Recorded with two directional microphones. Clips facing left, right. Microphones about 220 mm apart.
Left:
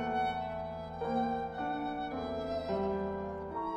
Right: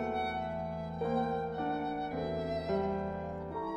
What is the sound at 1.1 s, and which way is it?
Music, centre (ahead or behind).